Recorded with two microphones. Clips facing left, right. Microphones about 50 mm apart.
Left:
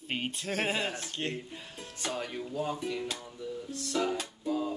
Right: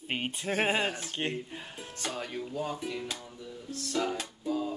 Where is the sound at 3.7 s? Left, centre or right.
Centre.